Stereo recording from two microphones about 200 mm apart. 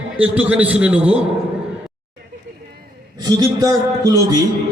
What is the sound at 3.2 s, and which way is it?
A man's voice, 20° right (ahead or behind).